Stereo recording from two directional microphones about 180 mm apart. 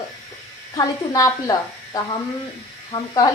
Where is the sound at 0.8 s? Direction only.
20° left (ahead or behind).